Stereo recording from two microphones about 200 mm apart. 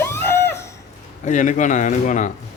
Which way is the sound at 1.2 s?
40° left (ahead or behind).